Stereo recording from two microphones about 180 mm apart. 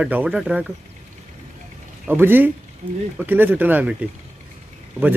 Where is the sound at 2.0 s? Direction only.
10° right (ahead or behind).